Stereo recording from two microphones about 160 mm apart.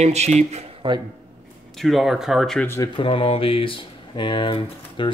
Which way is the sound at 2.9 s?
30° left (ahead or behind).